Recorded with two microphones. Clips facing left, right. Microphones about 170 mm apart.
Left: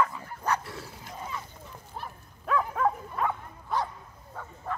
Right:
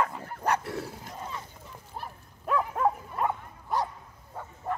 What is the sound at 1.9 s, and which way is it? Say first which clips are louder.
Dog: even; 5° right (ahead or behind).